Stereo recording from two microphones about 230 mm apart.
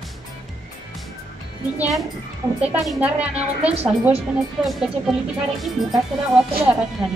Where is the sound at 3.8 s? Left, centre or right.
Right.